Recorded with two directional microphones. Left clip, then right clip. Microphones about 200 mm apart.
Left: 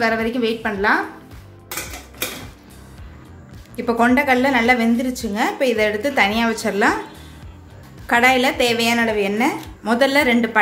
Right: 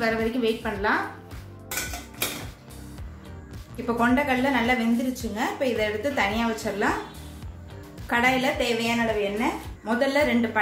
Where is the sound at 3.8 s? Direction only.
35° left (ahead or behind).